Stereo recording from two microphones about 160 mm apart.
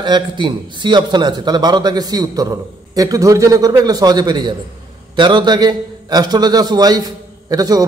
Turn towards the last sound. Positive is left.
turn(degrees=-20)  # may be behind; listen again after turning